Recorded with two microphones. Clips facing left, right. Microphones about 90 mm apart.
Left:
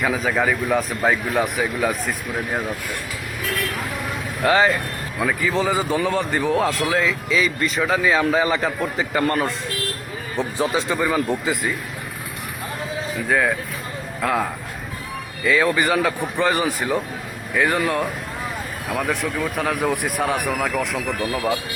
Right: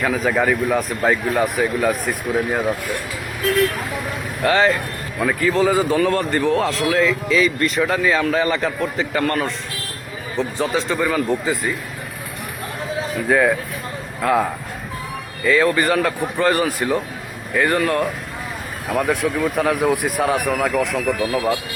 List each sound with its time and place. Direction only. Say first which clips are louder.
0.0 s speech: right 2 dB; centre (ahead or behind)
4.4 s speech: right 1 dB; 5° left (ahead or behind)
9.1 s speech: left 1 dB; 20° left (ahead or behind)
10.7 s speech: right 1 dB; 5° left (ahead or behind)
13.2 s speech: right 4 dB; centre (ahead or behind)